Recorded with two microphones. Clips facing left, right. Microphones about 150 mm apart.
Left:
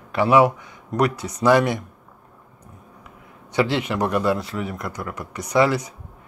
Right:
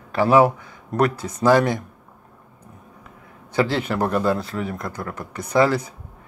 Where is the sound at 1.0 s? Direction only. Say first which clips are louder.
Right 1 dB; 45° right (ahead or behind).